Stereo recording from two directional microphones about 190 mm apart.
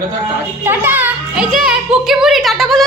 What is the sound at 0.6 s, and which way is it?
Speech, 10° right (ahead or behind).